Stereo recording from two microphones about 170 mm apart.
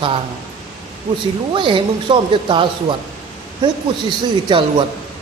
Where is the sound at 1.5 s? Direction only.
30° right (ahead or behind).